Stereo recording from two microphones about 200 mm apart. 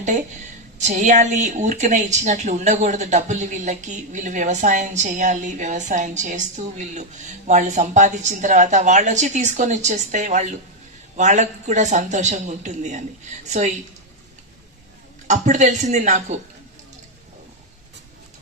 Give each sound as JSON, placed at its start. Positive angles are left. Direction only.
{"t": 0.8, "sound": "a woman's voice", "side_deg": -35}
{"t": 15.3, "sound": "a woman's voice", "side_deg": -35}